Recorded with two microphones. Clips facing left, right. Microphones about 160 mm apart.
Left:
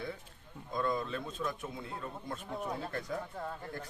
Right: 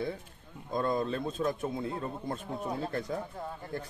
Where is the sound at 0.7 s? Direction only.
40° right (ahead or behind).